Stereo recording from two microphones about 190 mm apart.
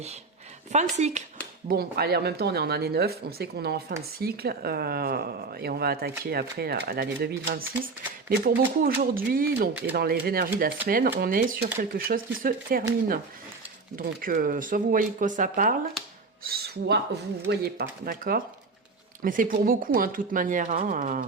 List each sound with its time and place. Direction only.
0.7 s speech: 35° right (ahead or behind)
1.6 s speech: 55° right (ahead or behind)
13.9 s speech: 45° right (ahead or behind)